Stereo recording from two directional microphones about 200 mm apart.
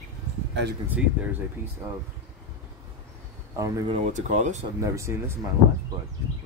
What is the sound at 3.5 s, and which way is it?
Speech, 15° right (ahead or behind).